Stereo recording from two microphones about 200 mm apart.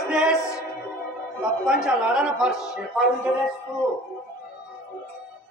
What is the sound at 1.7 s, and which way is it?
Speech, 5° right (ahead or behind).